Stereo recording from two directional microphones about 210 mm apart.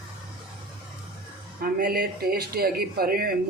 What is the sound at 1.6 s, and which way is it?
Speech, 45° right (ahead or behind).